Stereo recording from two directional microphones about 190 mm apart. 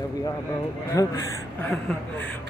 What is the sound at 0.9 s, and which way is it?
Speech, 15° left (ahead or behind).